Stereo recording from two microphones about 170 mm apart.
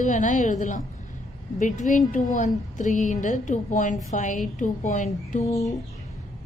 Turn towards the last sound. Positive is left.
turn(degrees=20)  # may be behind; listen again after turning